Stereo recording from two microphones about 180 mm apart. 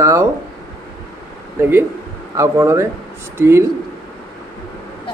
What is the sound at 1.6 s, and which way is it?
A man's voice, 10° right (ahead or behind).